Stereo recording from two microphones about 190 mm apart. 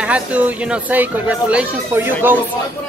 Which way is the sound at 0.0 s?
5° right (ahead or behind).